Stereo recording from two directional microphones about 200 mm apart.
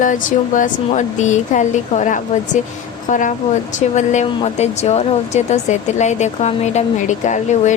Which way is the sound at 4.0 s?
30° left (ahead or behind).